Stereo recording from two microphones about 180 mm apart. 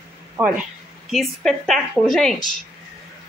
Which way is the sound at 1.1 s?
Centre (ahead or behind).